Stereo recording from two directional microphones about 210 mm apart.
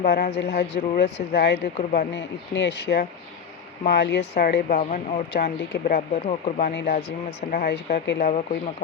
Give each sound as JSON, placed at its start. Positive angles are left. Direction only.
{"t": 0.0, "sound": "speech", "side_deg": 50}
{"t": 5.3, "sound": "speech", "side_deg": 50}
{"t": 6.7, "sound": "speech", "side_deg": 50}